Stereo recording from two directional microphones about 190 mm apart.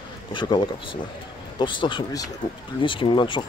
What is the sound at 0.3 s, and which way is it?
Speech, 25° left (ahead or behind).